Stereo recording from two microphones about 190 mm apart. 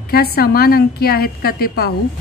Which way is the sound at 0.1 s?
55° left (ahead or behind).